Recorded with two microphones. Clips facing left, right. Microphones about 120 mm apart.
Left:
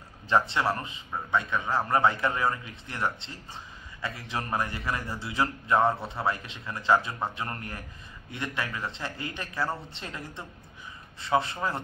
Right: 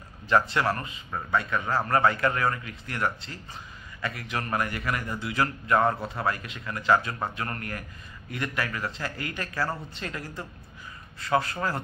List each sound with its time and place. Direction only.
0.3 s a man's voice: 20° left (ahead or behind)